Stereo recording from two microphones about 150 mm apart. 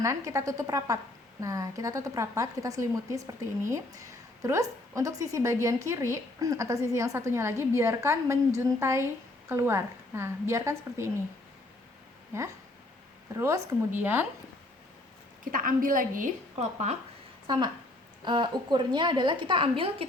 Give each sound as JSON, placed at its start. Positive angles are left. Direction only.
{"t": 0.3, "sound": "a woman's voice", "side_deg": -20}
{"t": 13.3, "sound": "a woman's voice", "side_deg": -20}
{"t": 15.5, "sound": "a woman's voice", "side_deg": -70}
{"t": 17.4, "sound": "a woman's voice", "side_deg": -35}